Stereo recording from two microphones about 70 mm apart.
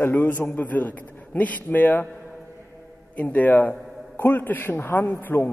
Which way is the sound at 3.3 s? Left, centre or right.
Left.